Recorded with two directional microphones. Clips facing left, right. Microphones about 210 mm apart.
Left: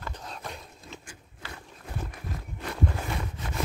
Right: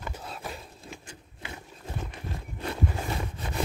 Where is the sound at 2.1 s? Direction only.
25° right (ahead or behind).